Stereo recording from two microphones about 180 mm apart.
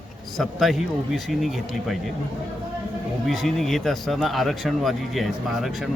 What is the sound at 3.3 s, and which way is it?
Speech, centre (ahead or behind).